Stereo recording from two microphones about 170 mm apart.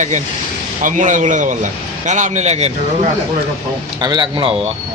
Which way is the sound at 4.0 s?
25° right (ahead or behind).